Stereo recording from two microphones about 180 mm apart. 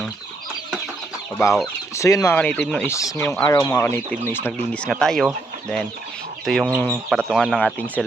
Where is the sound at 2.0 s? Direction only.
15° left (ahead or behind).